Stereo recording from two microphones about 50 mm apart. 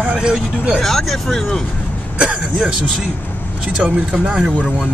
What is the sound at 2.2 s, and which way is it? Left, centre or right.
Speech, right.